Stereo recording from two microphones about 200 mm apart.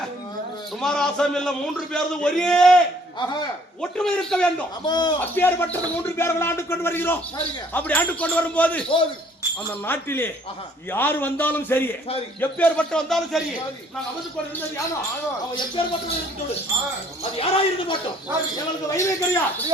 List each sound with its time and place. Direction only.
0.8 s a man's voice: centre (ahead or behind)
4.9 s speech: 20° left (ahead or behind)
5.3 s speech: 10° left (ahead or behind)
9.8 s a man's voice: 10° left (ahead or behind)
17.3 s speech: 30° left (ahead or behind)
18.5 s speech: 15° left (ahead or behind)